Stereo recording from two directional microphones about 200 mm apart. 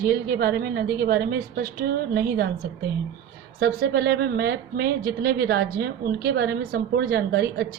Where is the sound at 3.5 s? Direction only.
50° right (ahead or behind).